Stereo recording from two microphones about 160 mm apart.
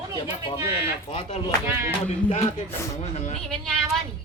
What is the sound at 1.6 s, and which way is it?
Music, 15° right (ahead or behind).